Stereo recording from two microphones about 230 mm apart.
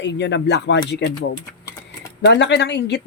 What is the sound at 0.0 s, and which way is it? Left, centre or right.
Speech, left.